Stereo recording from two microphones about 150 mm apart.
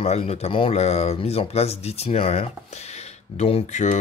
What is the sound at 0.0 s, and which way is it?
Speech, 45° left (ahead or behind).